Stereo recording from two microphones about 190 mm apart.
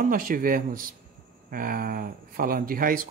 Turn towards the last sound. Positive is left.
turn(degrees=-50)  # may be behind; listen again after turning